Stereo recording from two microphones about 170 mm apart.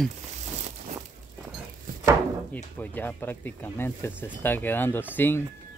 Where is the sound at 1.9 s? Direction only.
50° right (ahead or behind).